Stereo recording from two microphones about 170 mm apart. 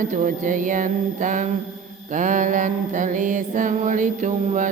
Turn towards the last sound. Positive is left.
turn(degrees=-50)  # may be behind; listen again after turning